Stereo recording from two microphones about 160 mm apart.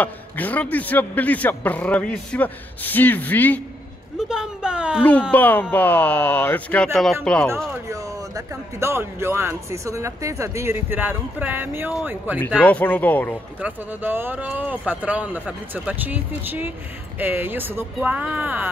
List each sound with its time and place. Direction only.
0.0 s a man's voice: 10° left (ahead or behind)
4.2 s a woman's voice: 5° right (ahead or behind)
5.3 s a man's voice: 10° left (ahead or behind)
7.7 s speech: 20° right (ahead or behind)
12.4 s a man's voice: 10° left (ahead or behind)
13.6 s speech: 10° right (ahead or behind)